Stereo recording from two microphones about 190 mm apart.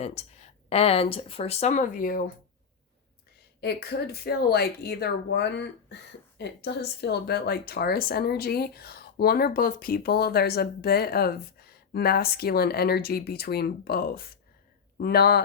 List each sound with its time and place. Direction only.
0.0 s speech: 35° left (ahead or behind); by 2.3 s 50° left (ahead or behind)
3.6 s speech: 60° left (ahead or behind)